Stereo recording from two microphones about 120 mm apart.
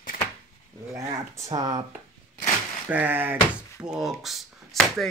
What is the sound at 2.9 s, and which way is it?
Speech, 15° right (ahead or behind).